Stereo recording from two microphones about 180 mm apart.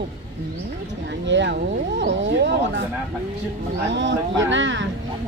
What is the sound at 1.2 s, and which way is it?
Speech, 80° right.